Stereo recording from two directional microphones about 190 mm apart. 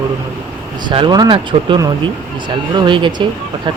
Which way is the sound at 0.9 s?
25° right (ahead or behind).